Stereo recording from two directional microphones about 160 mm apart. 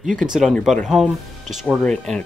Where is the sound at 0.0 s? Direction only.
5° right (ahead or behind).